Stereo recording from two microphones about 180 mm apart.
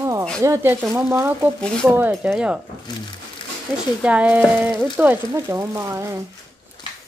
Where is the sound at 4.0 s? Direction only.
5° right (ahead or behind).